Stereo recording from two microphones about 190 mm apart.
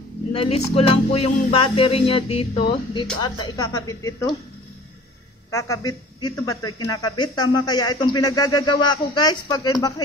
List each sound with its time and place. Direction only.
0.3 s music: 30° left (ahead or behind)
2.9 s speech: 25° left (ahead or behind)
5.5 s speech: 15° left (ahead or behind)